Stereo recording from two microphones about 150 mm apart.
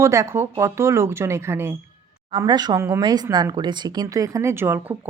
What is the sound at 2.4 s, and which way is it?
Speech, 30° right (ahead or behind).